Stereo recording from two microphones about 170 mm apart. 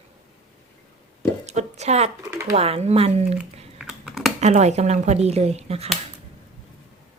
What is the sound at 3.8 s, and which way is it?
Computer keyboard, centre (ahead or behind).